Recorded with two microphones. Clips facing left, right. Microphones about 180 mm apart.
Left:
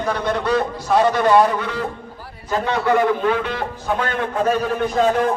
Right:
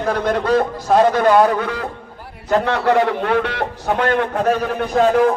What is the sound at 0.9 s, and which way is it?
Speech, 50° right (ahead or behind).